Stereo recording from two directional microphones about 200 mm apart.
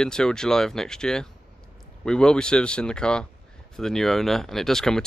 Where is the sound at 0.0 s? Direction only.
5° left (ahead or behind).